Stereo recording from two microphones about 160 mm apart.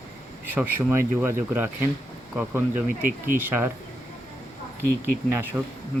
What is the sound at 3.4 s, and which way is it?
Speech, 15° right (ahead or behind).